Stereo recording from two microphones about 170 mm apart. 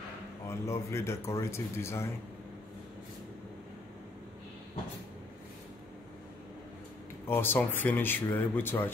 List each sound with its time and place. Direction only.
0.5 s speech: 15° left (ahead or behind)
7.2 s speech: 10° left (ahead or behind)